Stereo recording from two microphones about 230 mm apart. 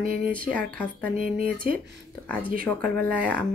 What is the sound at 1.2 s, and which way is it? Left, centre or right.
Speech, right.